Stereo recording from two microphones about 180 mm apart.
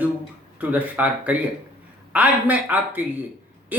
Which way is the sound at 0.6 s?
10° right (ahead or behind).